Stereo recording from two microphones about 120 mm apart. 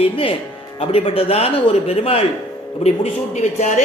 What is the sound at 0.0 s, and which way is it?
A man's voice, 50° left (ahead or behind).